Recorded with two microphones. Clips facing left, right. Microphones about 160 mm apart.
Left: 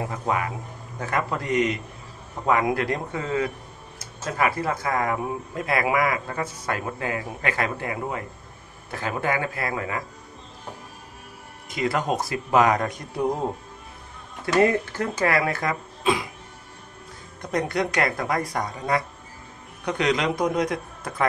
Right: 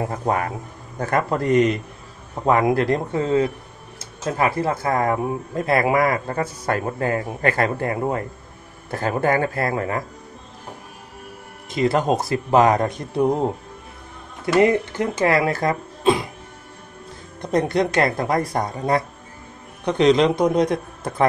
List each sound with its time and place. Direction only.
0.1 s speech: 40° right (ahead or behind)
11.7 s speech: 30° right (ahead or behind)
14.6 s speech: 20° right (ahead or behind); by 16.3 s 35° right (ahead or behind)
17.4 s speech: 25° right (ahead or behind)